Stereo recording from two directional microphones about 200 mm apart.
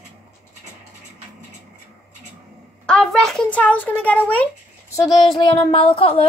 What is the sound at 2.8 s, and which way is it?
A child's voice, 5° left (ahead or behind).